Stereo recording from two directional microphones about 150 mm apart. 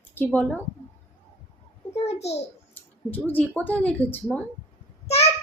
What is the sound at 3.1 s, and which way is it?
A woman's voice, 10° left (ahead or behind).